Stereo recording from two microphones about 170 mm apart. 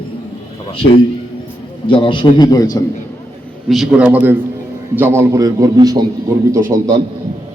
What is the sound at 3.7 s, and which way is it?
A man's voice, 5° right (ahead or behind).